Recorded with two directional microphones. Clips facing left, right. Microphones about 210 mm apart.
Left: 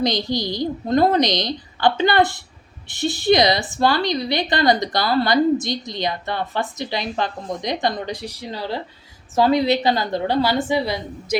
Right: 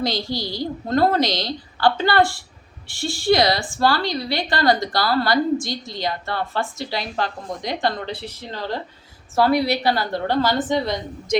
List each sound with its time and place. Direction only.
0.0 s a woman's voice: 20° left (ahead or behind)